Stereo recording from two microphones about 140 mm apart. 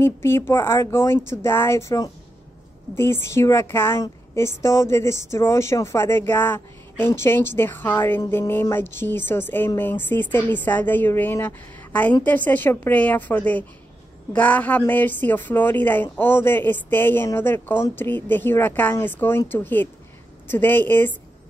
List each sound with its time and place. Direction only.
0.0 s a woman's voice: 15° left (ahead or behind)